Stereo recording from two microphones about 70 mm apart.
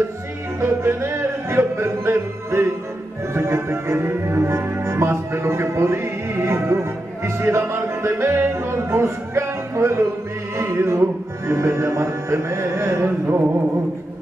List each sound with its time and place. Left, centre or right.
0.6 s music: right